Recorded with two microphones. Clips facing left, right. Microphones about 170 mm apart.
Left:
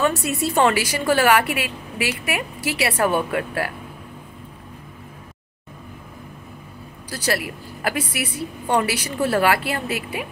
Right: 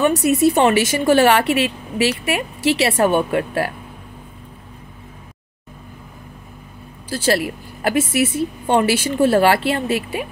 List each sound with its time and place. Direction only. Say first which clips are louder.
0.0 s a woman's voice: right 7 dB; 20° right (ahead or behind)
7.1 s a woman's voice: right 6 dB; 25° right (ahead or behind)